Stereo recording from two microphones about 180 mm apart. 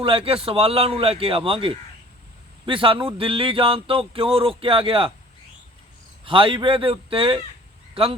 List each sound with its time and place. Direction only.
0.0 s a man's voice: 30° right (ahead or behind)
6.2 s speech: 30° right (ahead or behind)